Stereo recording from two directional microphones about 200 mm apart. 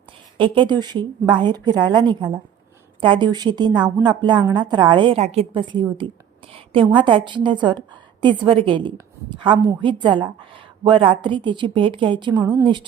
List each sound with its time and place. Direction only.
0.3 s a woman's voice: 25° right (ahead or behind)
6.9 s a woman's voice: 25° right (ahead or behind)